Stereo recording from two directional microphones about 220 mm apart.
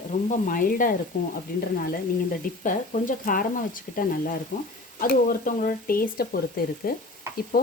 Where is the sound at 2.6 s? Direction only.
35° left (ahead or behind).